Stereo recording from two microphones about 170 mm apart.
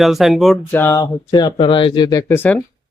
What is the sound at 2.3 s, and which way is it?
Speech, 10° left (ahead or behind).